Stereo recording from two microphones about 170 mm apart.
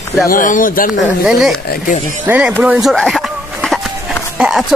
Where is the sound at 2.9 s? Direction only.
Centre (ahead or behind).